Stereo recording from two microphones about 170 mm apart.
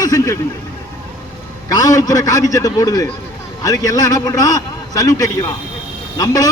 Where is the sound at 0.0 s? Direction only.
20° left (ahead or behind).